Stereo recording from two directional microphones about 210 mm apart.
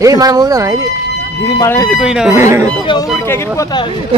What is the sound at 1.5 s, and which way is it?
Speech, 15° left (ahead or behind).